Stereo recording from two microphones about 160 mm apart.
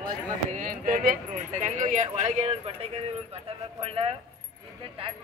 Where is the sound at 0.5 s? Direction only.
55° right (ahead or behind).